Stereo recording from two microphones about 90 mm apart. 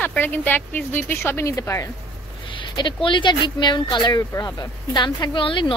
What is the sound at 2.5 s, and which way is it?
Speech, 65° left (ahead or behind).